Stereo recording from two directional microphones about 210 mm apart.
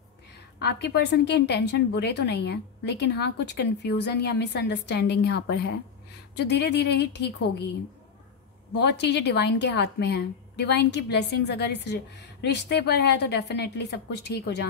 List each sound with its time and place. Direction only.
0.6 s a woman's voice: 50° left (ahead or behind)
8.7 s a woman's voice: 55° left (ahead or behind)